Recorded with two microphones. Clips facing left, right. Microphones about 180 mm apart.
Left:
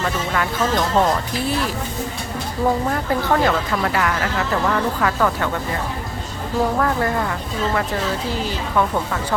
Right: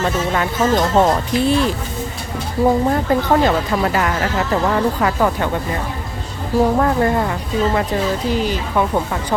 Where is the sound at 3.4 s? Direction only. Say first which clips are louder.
Right 3 dB; 25° right (ahead or behind).